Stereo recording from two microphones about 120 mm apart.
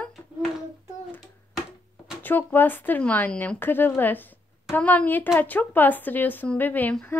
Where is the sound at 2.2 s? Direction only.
15° left (ahead or behind).